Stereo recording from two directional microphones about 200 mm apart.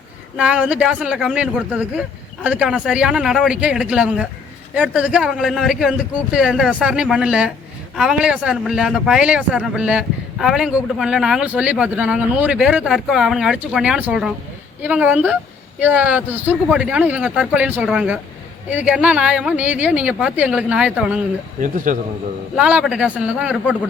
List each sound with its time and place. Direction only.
0.3 s speech: 5° right (ahead or behind)
21.6 s a man's voice: 40° right (ahead or behind)
22.5 s speech: 5° right (ahead or behind)